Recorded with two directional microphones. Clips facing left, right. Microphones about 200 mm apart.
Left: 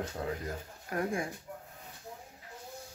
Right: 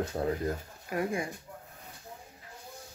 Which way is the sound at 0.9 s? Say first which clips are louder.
Right 2 dB; 5° right (ahead or behind).